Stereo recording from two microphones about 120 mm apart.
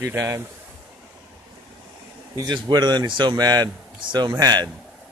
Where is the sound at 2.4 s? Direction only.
35° right (ahead or behind).